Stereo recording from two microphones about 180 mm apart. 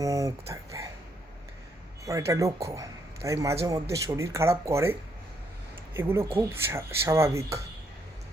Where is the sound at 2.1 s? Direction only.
15° right (ahead or behind).